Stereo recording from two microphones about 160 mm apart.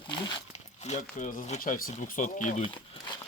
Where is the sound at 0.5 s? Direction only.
45° left (ahead or behind).